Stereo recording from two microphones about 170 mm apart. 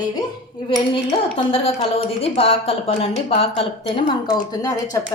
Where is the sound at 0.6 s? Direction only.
25° left (ahead or behind).